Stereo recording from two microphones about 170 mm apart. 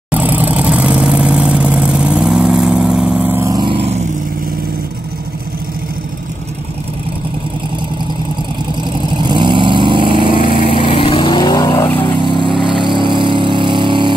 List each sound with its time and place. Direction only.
0.1 s vehicle: 10° right (ahead or behind); by 3.9 s 30° right (ahead or behind)
8.8 s vehicle: 25° right (ahead or behind)
10.8 s vehicle: 30° left (ahead or behind)
12.6 s vehicle: 30° right (ahead or behind)